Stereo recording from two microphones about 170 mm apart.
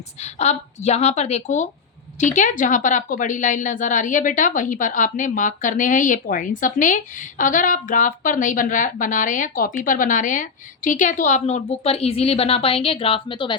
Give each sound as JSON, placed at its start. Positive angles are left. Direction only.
{"t": 0.2, "sound": "a woman's voice", "side_deg": 40}